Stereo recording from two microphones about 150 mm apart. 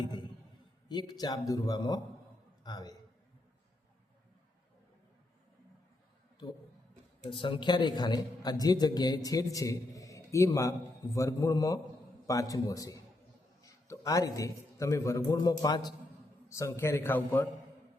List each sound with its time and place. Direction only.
0.9 s a man's voice: 25° left (ahead or behind)
7.3 s a man's voice: 35° left (ahead or behind); by 17.5 s 15° left (ahead or behind)